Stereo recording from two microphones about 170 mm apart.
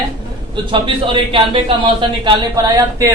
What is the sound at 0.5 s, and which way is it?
A man's voice, 30° right (ahead or behind).